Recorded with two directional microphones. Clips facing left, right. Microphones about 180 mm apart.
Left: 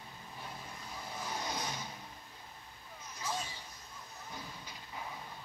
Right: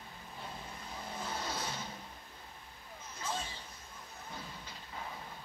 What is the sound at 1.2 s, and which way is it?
Vehicle, 15° left (ahead or behind).